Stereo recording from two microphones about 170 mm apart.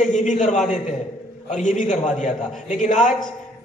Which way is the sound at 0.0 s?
45° left (ahead or behind).